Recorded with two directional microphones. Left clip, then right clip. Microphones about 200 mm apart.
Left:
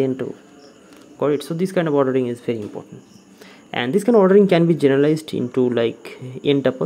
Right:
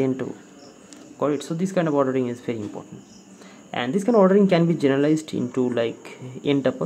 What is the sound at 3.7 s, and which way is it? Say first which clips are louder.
Speech: left 5 dB; 30° left (ahead or behind).